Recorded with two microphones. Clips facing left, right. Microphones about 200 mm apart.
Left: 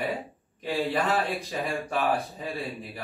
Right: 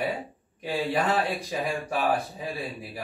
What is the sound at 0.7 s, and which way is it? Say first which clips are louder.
Speech: right 1 dB; centre (ahead or behind).